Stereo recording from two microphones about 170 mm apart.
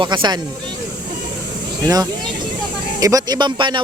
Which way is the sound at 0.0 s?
25° right (ahead or behind).